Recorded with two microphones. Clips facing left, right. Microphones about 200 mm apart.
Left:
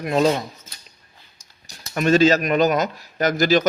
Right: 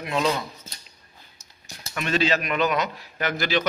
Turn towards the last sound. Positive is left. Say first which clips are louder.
# left 7 dB
turn(degrees=40)  # may be behind; listen again after turning